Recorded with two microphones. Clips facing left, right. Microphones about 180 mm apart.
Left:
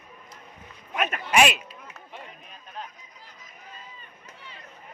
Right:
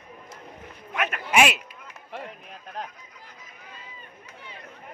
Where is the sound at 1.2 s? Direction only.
5° right (ahead or behind).